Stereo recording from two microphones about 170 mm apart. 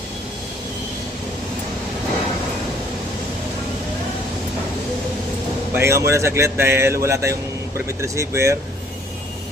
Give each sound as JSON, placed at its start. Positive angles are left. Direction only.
{"t": 5.7, "sound": "speech", "side_deg": -15}